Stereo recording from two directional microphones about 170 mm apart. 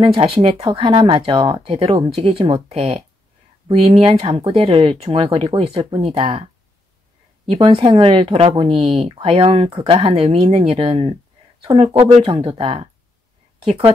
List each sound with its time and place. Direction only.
0.0 s a woman's voice: 35° right (ahead or behind)